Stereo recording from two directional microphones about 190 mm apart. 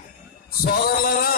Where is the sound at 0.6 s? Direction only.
50° left (ahead or behind).